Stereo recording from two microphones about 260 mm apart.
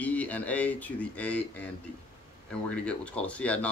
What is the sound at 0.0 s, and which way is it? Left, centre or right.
Speech, centre.